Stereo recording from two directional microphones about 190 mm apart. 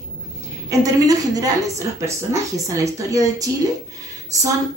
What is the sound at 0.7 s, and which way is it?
A woman's voice, 20° right (ahead or behind).